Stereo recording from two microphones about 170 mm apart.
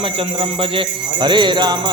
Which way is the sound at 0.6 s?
30° right (ahead or behind).